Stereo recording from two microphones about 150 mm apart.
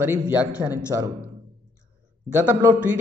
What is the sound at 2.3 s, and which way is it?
Speech, 10° right (ahead or behind).